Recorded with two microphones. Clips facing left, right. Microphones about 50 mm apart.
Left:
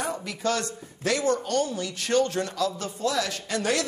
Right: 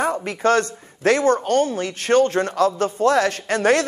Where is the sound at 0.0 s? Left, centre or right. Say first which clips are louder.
Right 8 dB; right.